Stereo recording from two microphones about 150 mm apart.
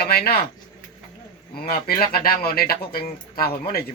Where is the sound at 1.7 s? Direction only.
85° left.